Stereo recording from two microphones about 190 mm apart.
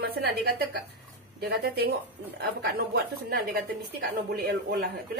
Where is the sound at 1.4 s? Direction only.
55° right (ahead or behind).